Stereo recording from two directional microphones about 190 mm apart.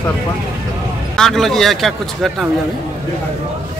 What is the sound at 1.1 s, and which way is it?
A man's voice, centre (ahead or behind).